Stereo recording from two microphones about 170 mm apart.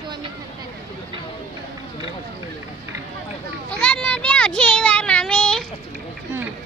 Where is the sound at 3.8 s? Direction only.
10° left (ahead or behind).